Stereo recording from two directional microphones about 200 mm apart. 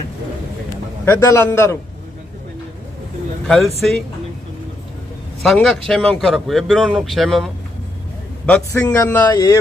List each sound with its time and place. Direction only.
1.0 s a man's voice: 15° left (ahead or behind)
3.4 s speech: centre (ahead or behind)
5.4 s a man's voice: centre (ahead or behind)
9.3 s a man's voice: 20° left (ahead or behind)